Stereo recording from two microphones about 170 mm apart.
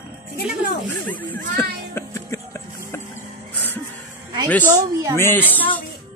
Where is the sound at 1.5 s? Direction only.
15° left (ahead or behind).